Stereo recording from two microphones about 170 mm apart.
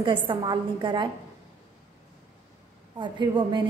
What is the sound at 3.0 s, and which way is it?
Speech, 25° right (ahead or behind).